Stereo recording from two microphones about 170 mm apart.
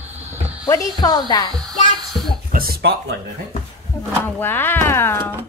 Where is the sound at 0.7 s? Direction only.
20° left (ahead or behind).